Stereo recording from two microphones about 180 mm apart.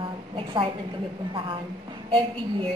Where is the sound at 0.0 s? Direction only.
30° right (ahead or behind).